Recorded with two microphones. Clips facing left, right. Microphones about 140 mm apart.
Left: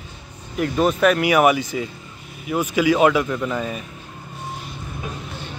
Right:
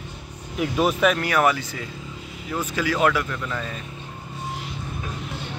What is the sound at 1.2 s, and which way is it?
Speech, 15° left (ahead or behind).